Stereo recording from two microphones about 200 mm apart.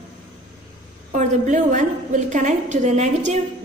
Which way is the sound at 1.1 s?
35° right (ahead or behind).